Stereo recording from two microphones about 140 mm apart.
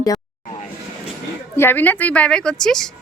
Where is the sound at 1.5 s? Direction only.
15° left (ahead or behind).